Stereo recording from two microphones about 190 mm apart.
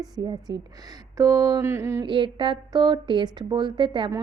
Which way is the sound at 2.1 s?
25° right (ahead or behind).